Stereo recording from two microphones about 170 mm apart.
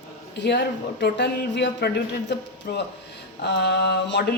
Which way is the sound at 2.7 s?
60° left (ahead or behind).